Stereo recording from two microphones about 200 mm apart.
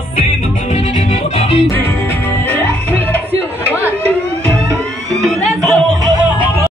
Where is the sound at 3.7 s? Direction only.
10° right (ahead or behind).